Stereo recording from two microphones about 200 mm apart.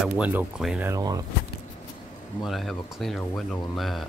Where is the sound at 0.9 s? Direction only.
20° right (ahead or behind).